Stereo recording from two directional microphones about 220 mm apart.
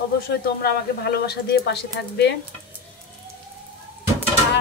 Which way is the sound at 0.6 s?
45° left (ahead or behind).